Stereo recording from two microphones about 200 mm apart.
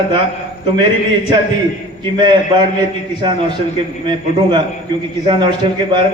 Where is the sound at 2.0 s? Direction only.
20° right (ahead or behind).